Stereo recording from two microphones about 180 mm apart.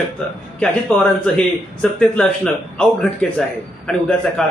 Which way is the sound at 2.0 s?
5° left (ahead or behind).